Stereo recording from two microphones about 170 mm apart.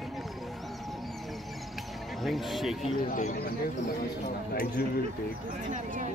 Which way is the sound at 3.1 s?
50° left (ahead or behind).